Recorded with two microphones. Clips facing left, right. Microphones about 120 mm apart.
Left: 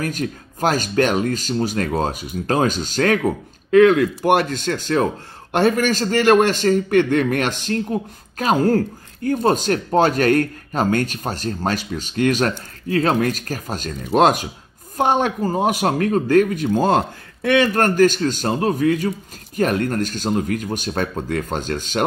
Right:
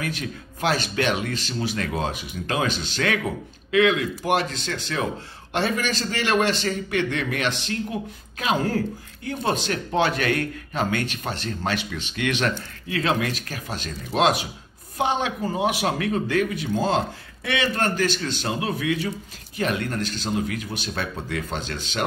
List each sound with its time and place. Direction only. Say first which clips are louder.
0.0 s a man's voice: left 6 dB; 40° left (ahead or behind)